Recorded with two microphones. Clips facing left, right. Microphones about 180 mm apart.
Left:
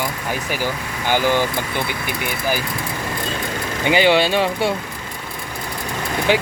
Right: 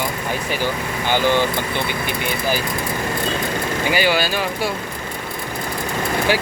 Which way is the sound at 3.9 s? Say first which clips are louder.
Left 5 dB; 25° left (ahead or behind).